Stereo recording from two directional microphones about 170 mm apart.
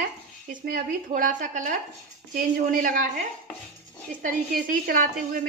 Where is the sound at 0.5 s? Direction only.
55° right (ahead or behind).